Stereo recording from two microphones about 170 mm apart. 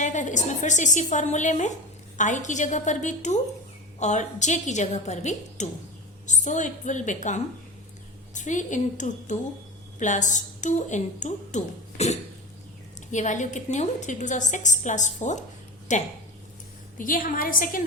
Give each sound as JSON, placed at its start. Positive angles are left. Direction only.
{"t": 0.0, "sound": "a woman's voice", "side_deg": 45}